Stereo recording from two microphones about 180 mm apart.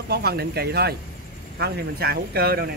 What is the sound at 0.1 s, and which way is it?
Speech, 60° right (ahead or behind).